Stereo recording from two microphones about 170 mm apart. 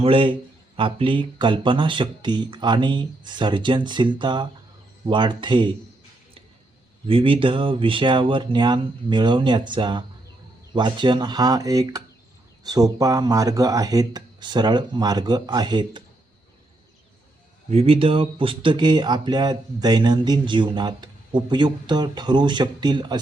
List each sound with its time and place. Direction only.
0.0 s a man's voice: 30° right (ahead or behind)
7.1 s speech: 30° right (ahead or behind)
17.7 s speech: 35° right (ahead or behind)